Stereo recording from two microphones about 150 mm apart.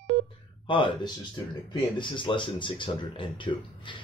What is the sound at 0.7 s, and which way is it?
Speech, 35° left (ahead or behind).